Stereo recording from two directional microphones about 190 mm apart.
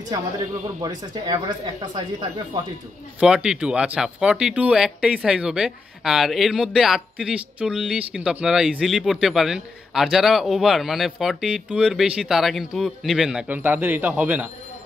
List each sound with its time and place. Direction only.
0.7 s speech: 20° right (ahead or behind)
3.2 s speech: 5° right (ahead or behind)